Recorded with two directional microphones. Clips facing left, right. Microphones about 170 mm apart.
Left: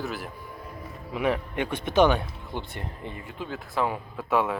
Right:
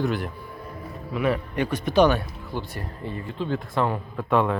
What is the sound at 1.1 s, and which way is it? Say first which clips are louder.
Speech: right 2 dB; 15° left (ahead or behind).